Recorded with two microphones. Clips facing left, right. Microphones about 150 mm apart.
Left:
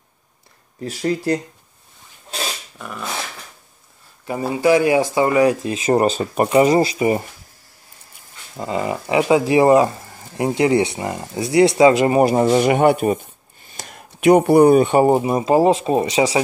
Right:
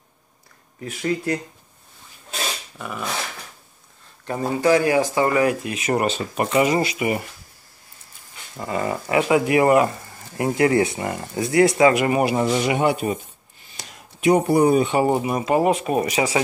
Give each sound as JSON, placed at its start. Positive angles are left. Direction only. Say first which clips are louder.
{"t": 0.7, "sound": "speech", "louder": "left 3 dB", "side_deg": 35}
{"t": 2.8, "sound": "dog", "louder": "right 1 dB", "side_deg": 0}
{"t": 4.3, "sound": "speech", "louder": "left 2 dB", "side_deg": 10}
{"t": 5.6, "sound": "speech", "louder": "left 5 dB", "side_deg": 30}
{"t": 8.5, "sound": "speech", "louder": "left 2 dB", "side_deg": 20}
{"t": 11.6, "sound": "speech", "louder": "left 4 dB", "side_deg": 30}
{"t": 12.4, "sound": "speech", "louder": "left 6 dB", "side_deg": 50}
{"t": 15.1, "sound": "speech", "louder": "left 4 dB", "side_deg": 25}